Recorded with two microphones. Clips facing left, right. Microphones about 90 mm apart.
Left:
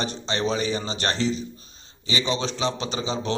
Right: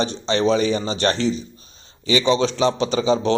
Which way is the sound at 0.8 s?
40° right (ahead or behind).